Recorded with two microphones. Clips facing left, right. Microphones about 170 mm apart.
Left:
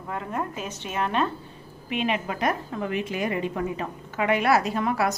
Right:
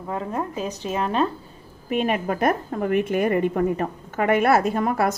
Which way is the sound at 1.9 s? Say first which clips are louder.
Right 4 dB; 45° right (ahead or behind).